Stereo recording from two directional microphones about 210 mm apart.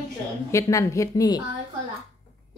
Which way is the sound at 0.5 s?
15° left (ahead or behind).